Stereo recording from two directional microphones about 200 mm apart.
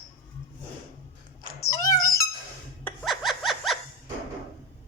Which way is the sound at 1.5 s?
15° left (ahead or behind).